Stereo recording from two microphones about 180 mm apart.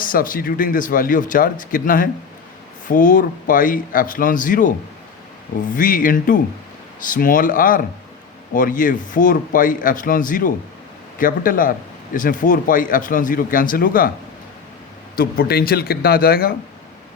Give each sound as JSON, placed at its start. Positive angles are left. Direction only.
{"t": 0.0, "sound": "speech", "side_deg": 50}
{"t": 5.7, "sound": "speech", "side_deg": 50}
{"t": 15.1, "sound": "speech", "side_deg": 55}